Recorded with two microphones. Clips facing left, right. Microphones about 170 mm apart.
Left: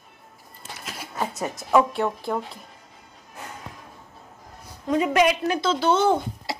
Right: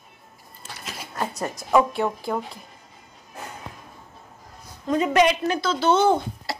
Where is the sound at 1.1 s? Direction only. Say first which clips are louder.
Even; 5° left (ahead or behind).